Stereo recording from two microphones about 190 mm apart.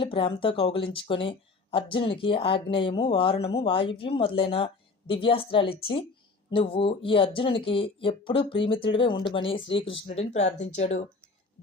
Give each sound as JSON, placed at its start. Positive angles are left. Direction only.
{"t": 0.0, "sound": "speech", "side_deg": 25}